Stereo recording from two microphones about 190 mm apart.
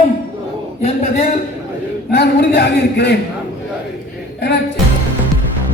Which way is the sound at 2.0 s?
60° left (ahead or behind).